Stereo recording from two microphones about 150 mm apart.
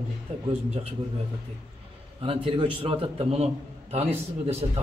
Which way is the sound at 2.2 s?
40° right (ahead or behind).